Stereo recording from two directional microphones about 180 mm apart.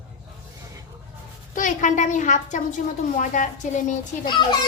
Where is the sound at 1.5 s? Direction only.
45° left (ahead or behind).